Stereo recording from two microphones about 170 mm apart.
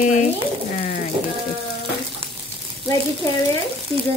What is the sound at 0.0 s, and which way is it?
Speech, 45° left (ahead or behind).